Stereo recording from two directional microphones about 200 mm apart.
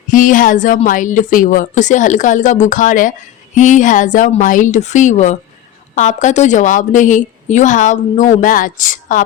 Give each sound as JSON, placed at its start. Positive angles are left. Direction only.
{"t": 0.1, "sound": "a woman's voice", "side_deg": 40}